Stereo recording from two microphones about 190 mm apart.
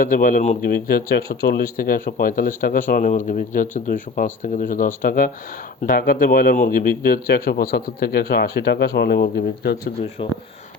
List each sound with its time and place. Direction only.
0.0 s speech: 45° left (ahead or behind)
10.2 s speech: 25° left (ahead or behind)